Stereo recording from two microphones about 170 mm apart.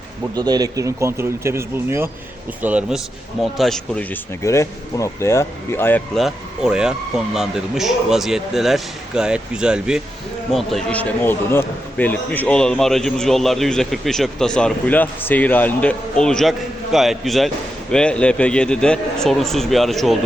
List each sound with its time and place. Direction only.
0.3 s a man's voice: 25° right (ahead or behind); by 4.2 s 5° left (ahead or behind)
4.4 s speech: 20° left (ahead or behind)
6.1 s a man's voice: centre (ahead or behind)